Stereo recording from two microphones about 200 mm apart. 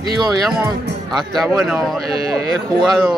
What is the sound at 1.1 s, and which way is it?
Speech, centre (ahead or behind).